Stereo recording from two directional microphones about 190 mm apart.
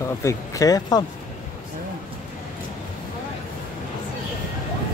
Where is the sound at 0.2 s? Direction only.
15° left (ahead or behind).